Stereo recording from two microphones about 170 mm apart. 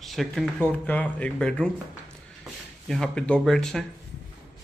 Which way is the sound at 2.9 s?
5° left (ahead or behind).